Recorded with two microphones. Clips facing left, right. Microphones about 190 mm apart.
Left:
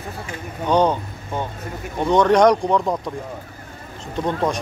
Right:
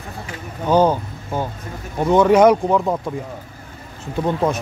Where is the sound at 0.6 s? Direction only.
5° right (ahead or behind).